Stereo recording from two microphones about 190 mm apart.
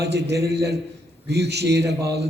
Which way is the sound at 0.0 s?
60° right (ahead or behind).